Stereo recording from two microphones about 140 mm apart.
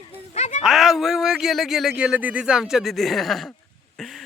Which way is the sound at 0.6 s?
5° right (ahead or behind).